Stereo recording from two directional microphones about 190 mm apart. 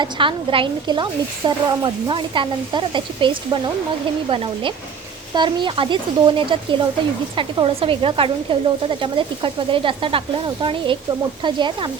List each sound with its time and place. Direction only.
0.0 s speech: 25° right (ahead or behind)
5.3 s speech: 25° right (ahead or behind)